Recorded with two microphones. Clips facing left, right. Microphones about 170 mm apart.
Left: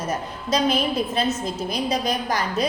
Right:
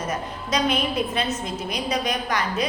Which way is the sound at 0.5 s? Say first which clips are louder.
Left 2 dB; 35° left (ahead or behind).